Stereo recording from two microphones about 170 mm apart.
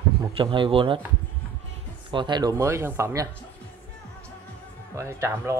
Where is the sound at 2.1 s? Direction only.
25° right (ahead or behind).